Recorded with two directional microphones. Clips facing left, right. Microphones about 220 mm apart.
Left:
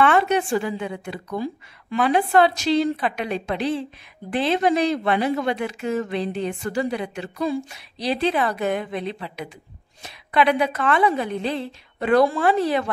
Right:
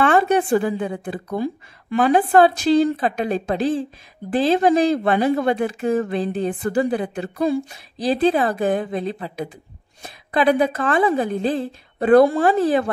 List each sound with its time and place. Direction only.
0.0 s a woman's voice: 40° right (ahead or behind)
1.4 s a woman's voice: 50° right (ahead or behind)
10.8 s a woman's voice: 45° right (ahead or behind)